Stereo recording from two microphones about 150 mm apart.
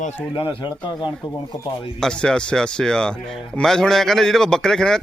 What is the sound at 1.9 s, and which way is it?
Speech, 5° left (ahead or behind).